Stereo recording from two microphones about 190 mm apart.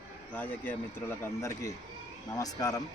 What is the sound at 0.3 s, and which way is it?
Speech, 10° left (ahead or behind).